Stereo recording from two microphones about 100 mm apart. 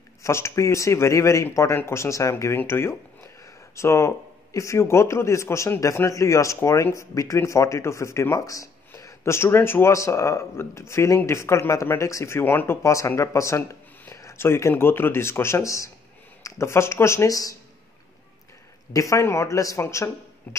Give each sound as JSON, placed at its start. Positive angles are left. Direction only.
{"t": 0.2, "sound": "a man's voice", "side_deg": 30}
{"t": 18.9, "sound": "speech", "side_deg": 30}